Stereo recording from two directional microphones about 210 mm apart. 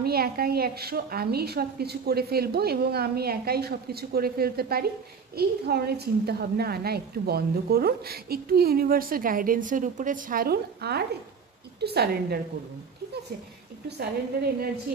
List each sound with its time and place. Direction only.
0.0 s a woman's voice: 45° right (ahead or behind)
13.8 s a woman's voice: 50° right (ahead or behind)